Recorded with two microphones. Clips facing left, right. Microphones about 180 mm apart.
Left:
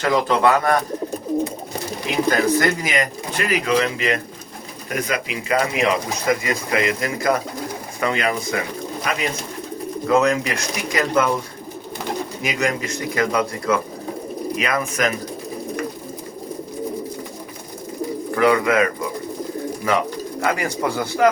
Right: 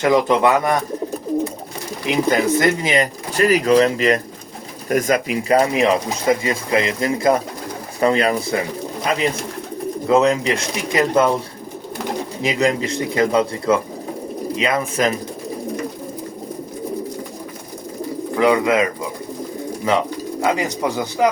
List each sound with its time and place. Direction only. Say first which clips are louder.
0.0 s speech: right 3 dB; 20° right (ahead or behind)
2.0 s speech: right 2 dB; 20° right (ahead or behind)
12.4 s speech: right 6 dB; 30° right (ahead or behind)
18.3 s speech: right 1 dB; 20° right (ahead or behind)